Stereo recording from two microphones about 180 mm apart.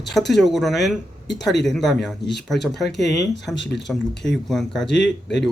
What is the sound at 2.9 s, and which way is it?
Speech, 70° left (ahead or behind).